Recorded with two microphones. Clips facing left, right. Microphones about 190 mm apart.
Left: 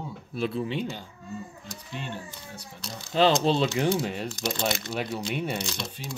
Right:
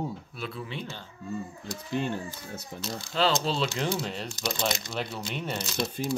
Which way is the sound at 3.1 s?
20° left (ahead or behind).